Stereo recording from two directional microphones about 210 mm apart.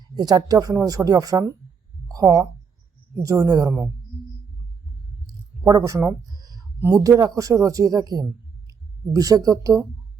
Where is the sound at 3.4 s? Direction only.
20° right (ahead or behind).